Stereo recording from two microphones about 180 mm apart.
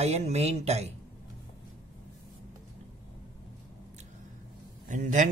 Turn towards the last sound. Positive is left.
turn(degrees=-45)  # may be behind; listen again after turning